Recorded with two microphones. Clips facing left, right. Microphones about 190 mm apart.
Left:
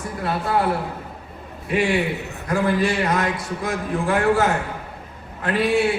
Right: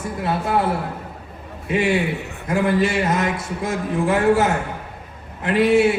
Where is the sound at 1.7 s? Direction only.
25° right (ahead or behind).